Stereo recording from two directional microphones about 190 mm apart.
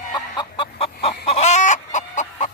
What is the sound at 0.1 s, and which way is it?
Chicken, 25° left (ahead or behind).